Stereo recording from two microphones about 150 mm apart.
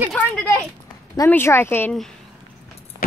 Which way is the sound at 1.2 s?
15° left (ahead or behind).